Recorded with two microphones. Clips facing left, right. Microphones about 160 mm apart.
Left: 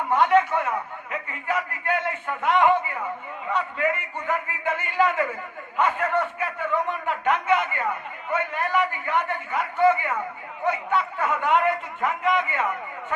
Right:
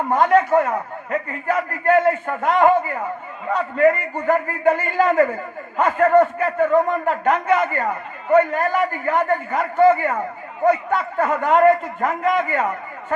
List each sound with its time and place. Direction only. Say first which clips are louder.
0.1 s a man's voice: right 4 dB; 40° right (ahead or behind)
4.1 s a man's voice: right 8 dB; 50° right (ahead or behind)
4.6 s a man's voice: right 5 dB; 35° right (ahead or behind)
11.3 s a man's voice: right 8 dB; 35° right (ahead or behind)